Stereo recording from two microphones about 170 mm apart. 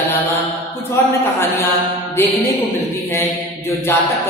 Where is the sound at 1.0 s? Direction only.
15° left (ahead or behind).